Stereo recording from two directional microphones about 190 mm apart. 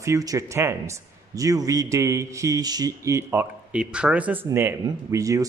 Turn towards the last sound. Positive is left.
turn(degrees=-15)  # may be behind; listen again after turning